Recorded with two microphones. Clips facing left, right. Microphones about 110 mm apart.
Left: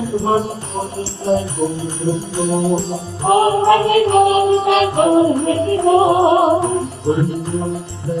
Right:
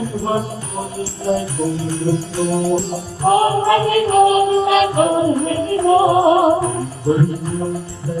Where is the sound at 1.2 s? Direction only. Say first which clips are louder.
Left 2 dB; 20° left (ahead or behind).